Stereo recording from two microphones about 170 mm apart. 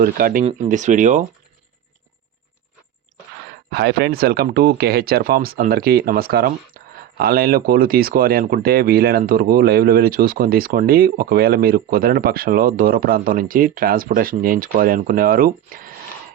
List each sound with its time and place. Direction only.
0.0 s speech: 55° right (ahead or behind)
0.4 s speech: 45° right (ahead or behind)
3.7 s speech: 75° right (ahead or behind); by 15.9 s 55° right (ahead or behind)